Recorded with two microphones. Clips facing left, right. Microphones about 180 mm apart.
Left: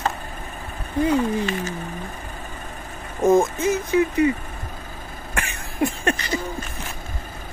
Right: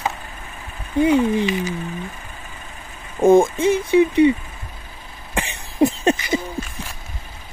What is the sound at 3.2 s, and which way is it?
Speech, 30° right (ahead or behind).